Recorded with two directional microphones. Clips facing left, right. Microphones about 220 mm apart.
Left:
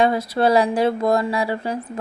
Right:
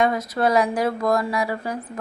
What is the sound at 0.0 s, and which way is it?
A woman's voice, 30° left (ahead or behind).